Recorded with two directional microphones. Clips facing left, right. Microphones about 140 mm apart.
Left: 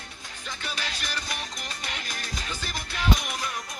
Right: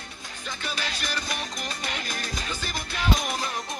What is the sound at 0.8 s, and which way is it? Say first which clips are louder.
Music: right 3 dB; 50° right (ahead or behind).